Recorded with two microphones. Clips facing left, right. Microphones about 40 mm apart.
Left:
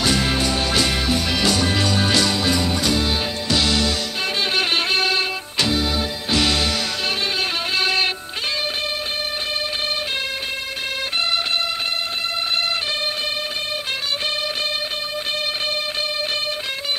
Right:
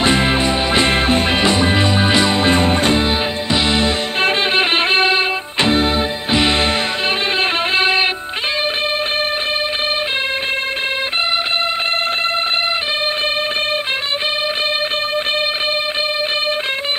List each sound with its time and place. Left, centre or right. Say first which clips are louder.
0.0 s music: right 5 dB; right
7.7 s music: right 4 dB; right